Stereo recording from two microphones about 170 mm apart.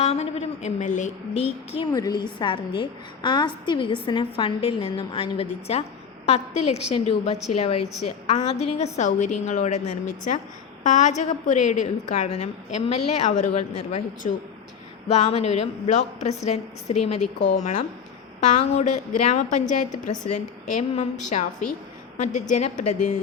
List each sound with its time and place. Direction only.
0.0 s a woman's voice: 40° left (ahead or behind)
1.9 s a woman's voice: 20° left (ahead or behind); by 23.1 s 45° left (ahead or behind)